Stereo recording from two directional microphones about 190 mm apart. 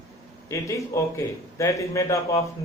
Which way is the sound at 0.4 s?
15° left (ahead or behind).